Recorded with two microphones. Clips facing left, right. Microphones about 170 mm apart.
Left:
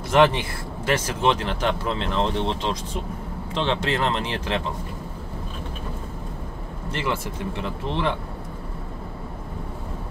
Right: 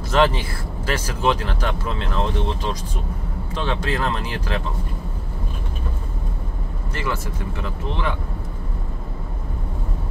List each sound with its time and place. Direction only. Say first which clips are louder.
0.1 s speech: left 1 dB; 20° left (ahead or behind)
6.9 s speech: left 1 dB; 25° left (ahead or behind)